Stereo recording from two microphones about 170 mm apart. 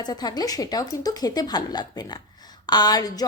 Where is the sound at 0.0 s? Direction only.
25° left (ahead or behind).